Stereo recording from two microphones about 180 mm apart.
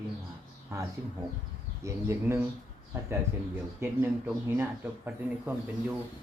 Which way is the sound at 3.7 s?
10° right (ahead or behind).